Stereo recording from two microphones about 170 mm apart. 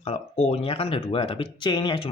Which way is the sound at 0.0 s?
35° left (ahead or behind).